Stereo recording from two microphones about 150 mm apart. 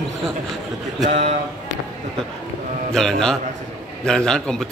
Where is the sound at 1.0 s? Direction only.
45° right (ahead or behind).